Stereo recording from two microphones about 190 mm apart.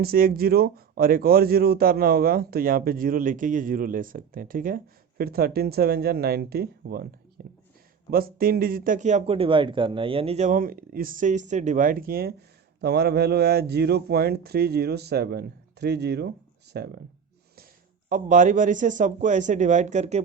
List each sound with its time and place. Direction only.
0.0 s a man's voice: 50° right (ahead or behind)
18.1 s a man's voice: 40° right (ahead or behind)